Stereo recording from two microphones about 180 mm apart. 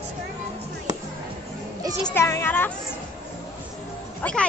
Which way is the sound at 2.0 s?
15° left (ahead or behind).